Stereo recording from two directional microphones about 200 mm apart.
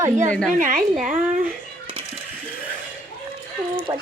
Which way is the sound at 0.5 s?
40° right (ahead or behind).